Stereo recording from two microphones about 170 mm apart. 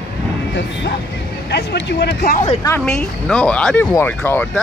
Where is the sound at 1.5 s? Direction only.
80° left.